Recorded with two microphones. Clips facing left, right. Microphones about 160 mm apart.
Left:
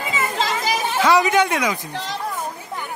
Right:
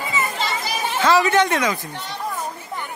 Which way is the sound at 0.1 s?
90° left.